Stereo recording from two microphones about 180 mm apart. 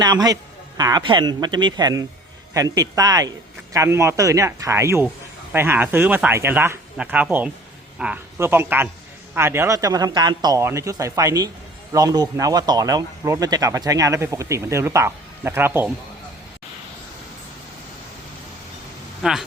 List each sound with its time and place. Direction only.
0.0 s a man's voice: 20° right (ahead or behind)
19.2 s speech: 5° right (ahead or behind)